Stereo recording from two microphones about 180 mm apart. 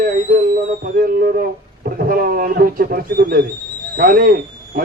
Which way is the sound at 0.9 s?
50° right (ahead or behind).